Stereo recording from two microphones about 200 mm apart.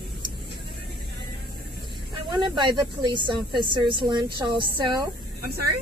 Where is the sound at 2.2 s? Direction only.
25° right (ahead or behind).